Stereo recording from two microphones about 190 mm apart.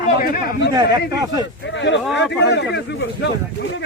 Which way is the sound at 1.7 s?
70° left (ahead or behind).